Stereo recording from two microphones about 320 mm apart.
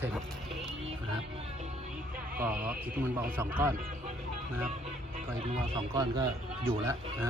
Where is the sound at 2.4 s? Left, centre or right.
Centre.